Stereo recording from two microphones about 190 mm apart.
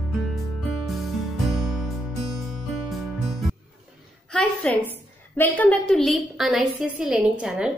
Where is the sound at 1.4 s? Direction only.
Centre (ahead or behind).